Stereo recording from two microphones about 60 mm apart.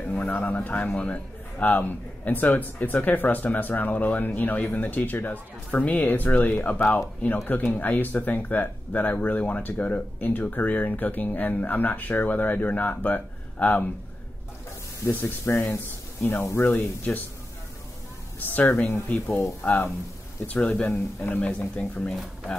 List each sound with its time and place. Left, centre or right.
0.0 s speech: left
15.0 s speech: left
18.4 s speech: left